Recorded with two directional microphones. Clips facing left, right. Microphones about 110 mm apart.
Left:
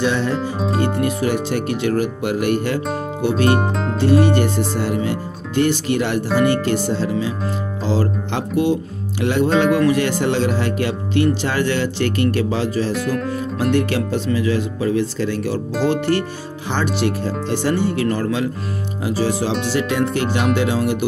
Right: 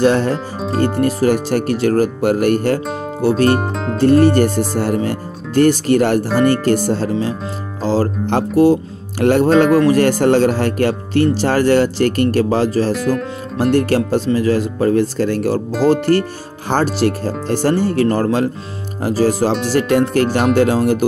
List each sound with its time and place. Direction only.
0.0 s speech: 45° right (ahead or behind)
0.4 s music: centre (ahead or behind)
1.0 s speech: 40° right (ahead or behind)
3.4 s speech: centre (ahead or behind)
4.0 s speech: 45° right (ahead or behind)
12.9 s speech: 5° right (ahead or behind)
13.6 s speech: 40° right (ahead or behind)